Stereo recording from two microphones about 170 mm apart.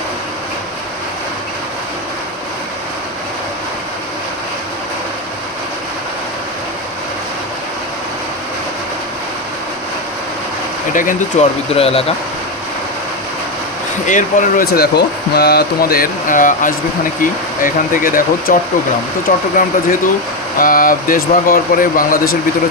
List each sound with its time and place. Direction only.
10.9 s speech: 50° left (ahead or behind)
11.7 s speech: 35° left (ahead or behind)
14.1 s speech: 50° left (ahead or behind)
20.6 s speech: 55° left (ahead or behind)